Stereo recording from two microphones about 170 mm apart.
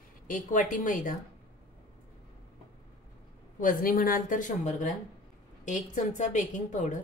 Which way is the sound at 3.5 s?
55° left (ahead or behind).